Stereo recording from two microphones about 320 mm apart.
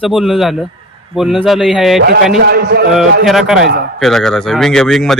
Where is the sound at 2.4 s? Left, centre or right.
Right.